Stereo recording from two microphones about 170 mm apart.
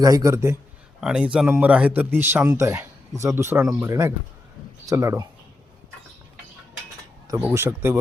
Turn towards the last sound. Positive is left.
turn(degrees=-15)  # may be behind; listen again after turning